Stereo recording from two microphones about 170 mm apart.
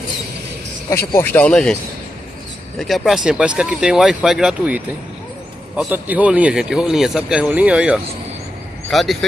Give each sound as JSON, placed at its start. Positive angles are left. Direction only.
{"t": 0.8, "sound": "speech", "side_deg": 15}
{"t": 3.1, "sound": "speech", "side_deg": -5}